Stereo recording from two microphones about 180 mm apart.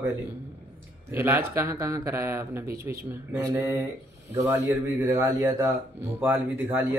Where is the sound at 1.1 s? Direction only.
10° right (ahead or behind).